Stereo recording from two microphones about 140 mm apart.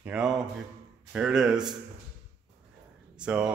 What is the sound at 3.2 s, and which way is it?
Speech, 5° right (ahead or behind).